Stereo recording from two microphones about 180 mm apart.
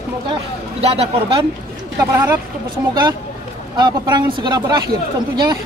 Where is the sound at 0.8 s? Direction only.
35° right (ahead or behind).